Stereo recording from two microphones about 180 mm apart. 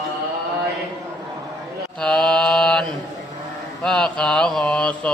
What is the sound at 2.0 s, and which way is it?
Mantra, 5° left (ahead or behind).